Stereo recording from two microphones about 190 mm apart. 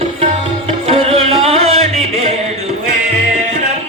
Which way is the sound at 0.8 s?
30° right (ahead or behind).